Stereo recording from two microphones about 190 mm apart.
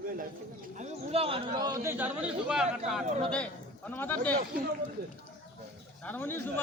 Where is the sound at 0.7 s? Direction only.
35° right (ahead or behind); by 2.6 s 5° right (ahead or behind).